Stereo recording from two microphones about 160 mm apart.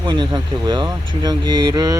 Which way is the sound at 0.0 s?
30° right (ahead or behind).